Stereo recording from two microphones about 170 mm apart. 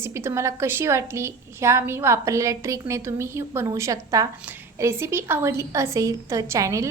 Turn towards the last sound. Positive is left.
turn(degrees=-15)  # may be behind; listen again after turning